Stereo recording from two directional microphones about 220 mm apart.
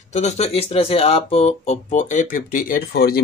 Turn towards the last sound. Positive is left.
turn(degrees=45)  # may be behind; listen again after turning